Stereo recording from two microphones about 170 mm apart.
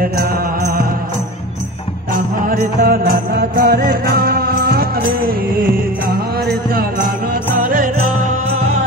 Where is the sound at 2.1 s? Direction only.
55° right (ahead or behind).